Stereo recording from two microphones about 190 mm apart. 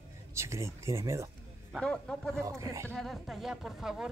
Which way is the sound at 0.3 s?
15° right (ahead or behind).